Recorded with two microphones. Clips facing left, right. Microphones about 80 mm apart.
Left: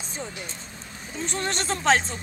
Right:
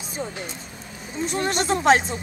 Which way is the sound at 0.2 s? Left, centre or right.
Right.